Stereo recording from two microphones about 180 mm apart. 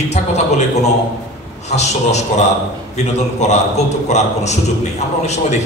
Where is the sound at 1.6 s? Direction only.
40° left (ahead or behind).